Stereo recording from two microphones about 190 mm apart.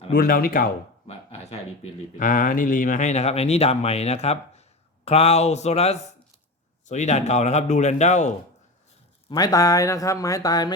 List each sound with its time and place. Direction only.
0.1 s speech: 50° left (ahead or behind)
1.0 s a sound: 30° left (ahead or behind)
2.1 s speech: 45° left (ahead or behind)
9.3 s speech: 20° left (ahead or behind)